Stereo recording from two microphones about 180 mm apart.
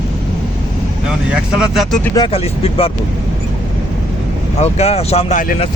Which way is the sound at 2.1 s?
30° left (ahead or behind).